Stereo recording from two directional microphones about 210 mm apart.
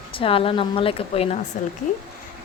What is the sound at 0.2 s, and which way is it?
A woman's voice, 25° left (ahead or behind).